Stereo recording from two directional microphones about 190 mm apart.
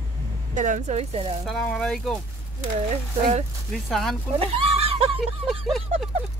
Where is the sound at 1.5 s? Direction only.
5° left (ahead or behind).